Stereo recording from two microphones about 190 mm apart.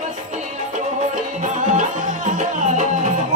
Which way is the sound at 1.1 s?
40° right (ahead or behind).